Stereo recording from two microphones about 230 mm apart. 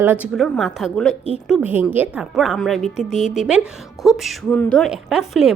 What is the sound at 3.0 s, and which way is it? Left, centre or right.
Speech, left.